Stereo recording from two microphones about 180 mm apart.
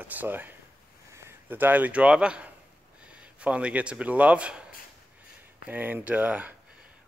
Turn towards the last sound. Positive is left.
turn(degrees=-10)  # may be behind; listen again after turning